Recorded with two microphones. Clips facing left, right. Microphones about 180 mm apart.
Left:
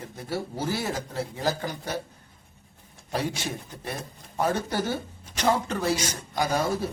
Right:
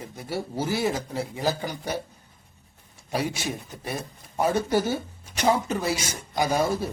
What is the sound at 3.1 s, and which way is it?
Speech, 10° right (ahead or behind).